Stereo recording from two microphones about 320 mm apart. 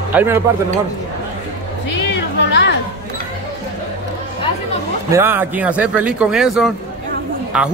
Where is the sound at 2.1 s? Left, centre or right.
Left.